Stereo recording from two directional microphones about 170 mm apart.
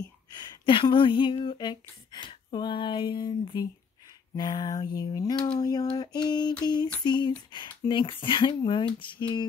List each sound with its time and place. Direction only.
0.4 s speech: 30° left (ahead or behind)